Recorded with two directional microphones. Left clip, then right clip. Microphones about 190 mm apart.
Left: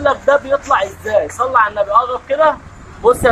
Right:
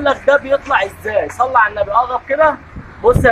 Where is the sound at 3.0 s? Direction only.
15° right (ahead or behind).